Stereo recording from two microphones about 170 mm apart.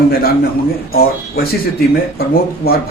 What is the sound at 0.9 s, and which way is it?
Speech, 65° left (ahead or behind).